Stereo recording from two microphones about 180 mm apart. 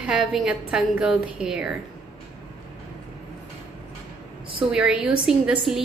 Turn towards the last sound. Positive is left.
turn(degrees=0)  # may be behind; listen again after turning